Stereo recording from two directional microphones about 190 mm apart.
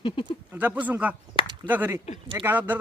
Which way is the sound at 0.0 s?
25° left (ahead or behind).